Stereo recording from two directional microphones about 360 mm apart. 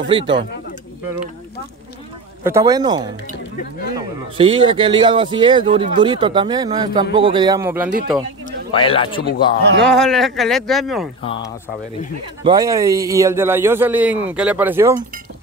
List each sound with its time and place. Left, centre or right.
0.0 s a man's voice: centre
2.4 s a man's voice: centre
8.5 s speech: centre
9.7 s speech: right
9.9 s speech: centre
12.4 s a man's voice: centre